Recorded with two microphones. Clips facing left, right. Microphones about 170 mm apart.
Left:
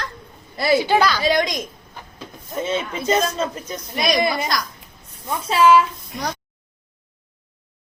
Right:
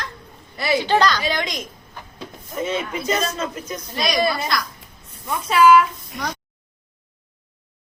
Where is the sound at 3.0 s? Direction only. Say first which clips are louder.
Left 6 dB; 30° left (ahead or behind).